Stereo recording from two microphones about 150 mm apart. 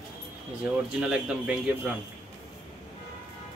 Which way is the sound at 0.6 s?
5° right (ahead or behind).